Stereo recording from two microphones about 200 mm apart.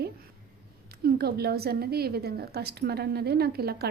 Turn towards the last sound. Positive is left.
turn(degrees=-50)  # may be behind; listen again after turning